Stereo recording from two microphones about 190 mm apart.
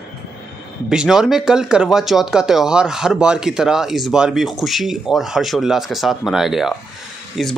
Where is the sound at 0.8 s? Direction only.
5° right (ahead or behind).